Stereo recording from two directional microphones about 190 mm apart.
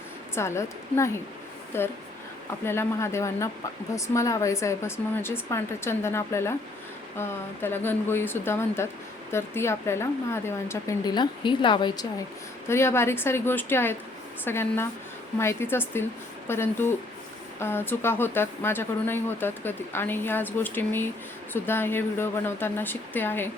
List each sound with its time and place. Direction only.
0.3 s speech: 15° left (ahead or behind)
12.6 s speech: 15° left (ahead or behind)